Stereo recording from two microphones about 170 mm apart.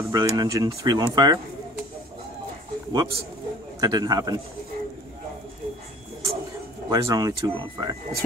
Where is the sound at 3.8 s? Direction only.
20° right (ahead or behind).